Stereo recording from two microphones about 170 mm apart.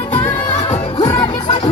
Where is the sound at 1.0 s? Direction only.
25° left (ahead or behind).